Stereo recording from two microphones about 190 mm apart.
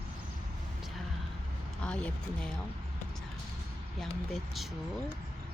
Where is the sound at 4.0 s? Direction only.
Centre (ahead or behind).